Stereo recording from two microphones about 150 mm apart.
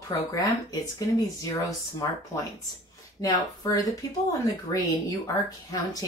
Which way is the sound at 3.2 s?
25° left (ahead or behind).